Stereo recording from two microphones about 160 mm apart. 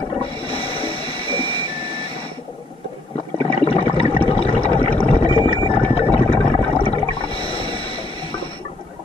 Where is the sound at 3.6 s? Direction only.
35° left (ahead or behind).